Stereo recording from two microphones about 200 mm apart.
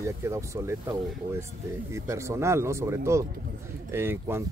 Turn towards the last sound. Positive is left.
turn(degrees=-10)  # may be behind; listen again after turning